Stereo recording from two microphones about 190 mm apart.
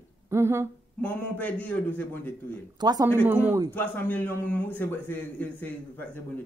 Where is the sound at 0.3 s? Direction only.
15° right (ahead or behind).